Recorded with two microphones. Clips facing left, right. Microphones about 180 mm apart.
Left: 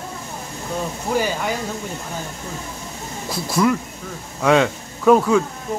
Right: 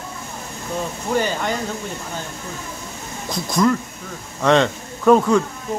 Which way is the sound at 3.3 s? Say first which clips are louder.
Right 1 dB; 5° left (ahead or behind).